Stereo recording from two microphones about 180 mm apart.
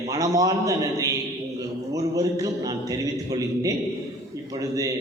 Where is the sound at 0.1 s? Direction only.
20° right (ahead or behind).